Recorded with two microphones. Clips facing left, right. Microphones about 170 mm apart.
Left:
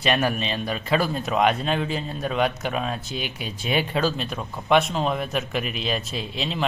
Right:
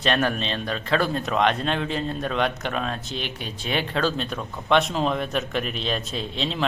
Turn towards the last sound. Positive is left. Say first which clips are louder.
# right 1 dB
turn(degrees=5)  # may be behind; listen again after turning